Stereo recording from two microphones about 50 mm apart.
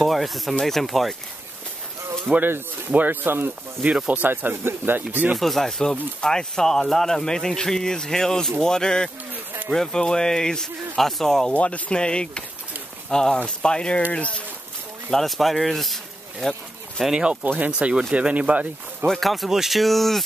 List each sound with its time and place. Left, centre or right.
0.0 s speech: centre
2.3 s speech: centre
2.9 s speech: right
5.4 s speech: centre
11.5 s speech: left
15.0 s speech: centre
17.2 s speech: right
19.0 s speech: centre